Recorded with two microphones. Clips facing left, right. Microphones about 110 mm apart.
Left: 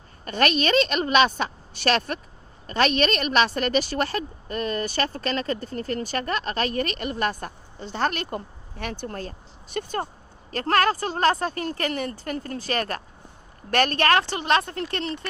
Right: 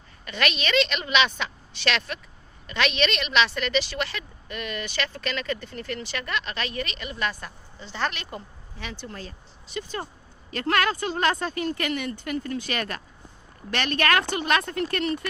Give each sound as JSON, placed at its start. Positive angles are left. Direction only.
{"t": 0.3, "sound": "speech", "side_deg": 45}
{"t": 10.5, "sound": "a woman's voice", "side_deg": 40}
{"t": 14.0, "sound": "a woman's voice", "side_deg": 30}